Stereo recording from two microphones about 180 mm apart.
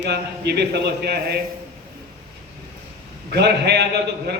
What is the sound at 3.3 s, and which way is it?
Speech, 65° right (ahead or behind).